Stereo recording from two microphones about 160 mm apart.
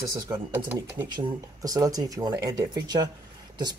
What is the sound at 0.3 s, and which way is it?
Speech, 15° right (ahead or behind).